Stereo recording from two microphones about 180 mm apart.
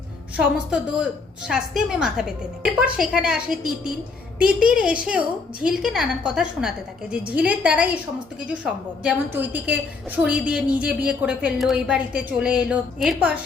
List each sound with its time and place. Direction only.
0.3 s a woman's voice: 5° right (ahead or behind)